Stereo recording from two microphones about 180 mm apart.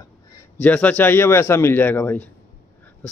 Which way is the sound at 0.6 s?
10° left (ahead or behind).